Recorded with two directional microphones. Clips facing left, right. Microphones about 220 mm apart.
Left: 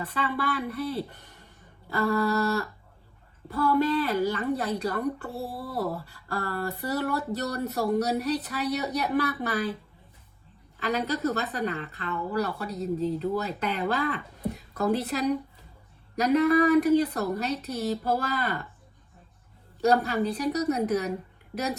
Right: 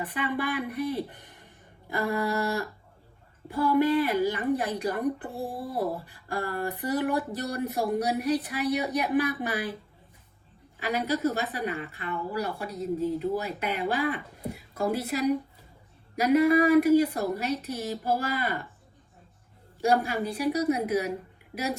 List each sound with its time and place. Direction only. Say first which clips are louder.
0.0 s speech: even; 15° right (ahead or behind)
10.8 s speech: even; 10° right (ahead or behind)
19.8 s speech: left 2 dB; 10° right (ahead or behind)